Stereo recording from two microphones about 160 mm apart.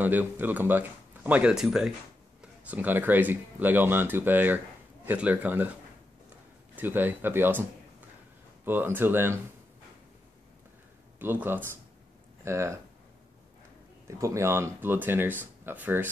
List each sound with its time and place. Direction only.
0.0 s speech: 10° right (ahead or behind)
6.7 s speech: 10° right (ahead or behind)
8.6 s speech: 10° right (ahead or behind)
11.1 s speech: 10° right (ahead or behind)
14.0 s speech: 20° right (ahead or behind)